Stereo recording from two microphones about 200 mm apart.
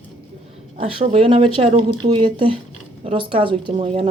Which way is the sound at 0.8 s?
30° right (ahead or behind).